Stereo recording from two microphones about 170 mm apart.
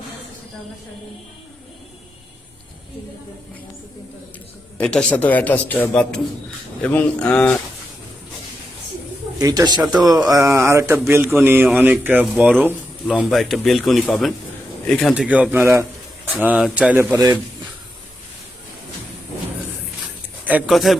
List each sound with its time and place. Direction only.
4.8 s speech: 5° left (ahead or behind)
9.4 s a man's voice: 20° right (ahead or behind)
17.1 s speech: 25° right (ahead or behind)
20.4 s a man's voice: 10° right (ahead or behind)